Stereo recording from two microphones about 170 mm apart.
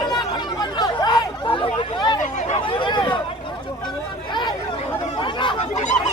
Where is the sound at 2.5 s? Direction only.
30° left (ahead or behind).